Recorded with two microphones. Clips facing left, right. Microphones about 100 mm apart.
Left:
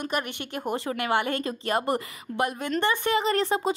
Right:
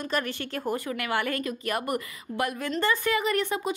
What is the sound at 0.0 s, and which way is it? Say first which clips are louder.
Speech: even; 20° left (ahead or behind).